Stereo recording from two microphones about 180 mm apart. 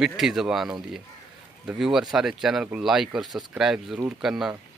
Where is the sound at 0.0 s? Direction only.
Centre (ahead or behind).